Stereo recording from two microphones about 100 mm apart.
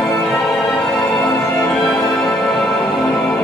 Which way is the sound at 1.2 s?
5° left (ahead or behind).